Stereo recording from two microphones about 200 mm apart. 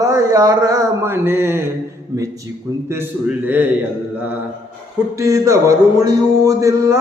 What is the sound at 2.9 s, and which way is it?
Speech, 10° right (ahead or behind).